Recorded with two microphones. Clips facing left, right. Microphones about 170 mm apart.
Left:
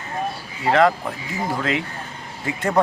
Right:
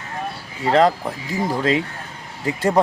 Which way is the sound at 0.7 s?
30° right (ahead or behind).